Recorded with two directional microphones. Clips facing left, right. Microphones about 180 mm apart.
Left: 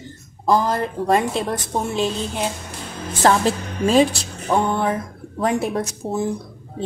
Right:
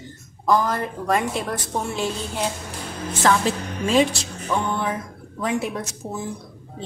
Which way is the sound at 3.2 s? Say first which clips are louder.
Left 3 dB; 35° left (ahead or behind).